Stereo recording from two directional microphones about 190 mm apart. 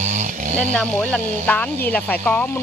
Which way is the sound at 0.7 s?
5° left (ahead or behind).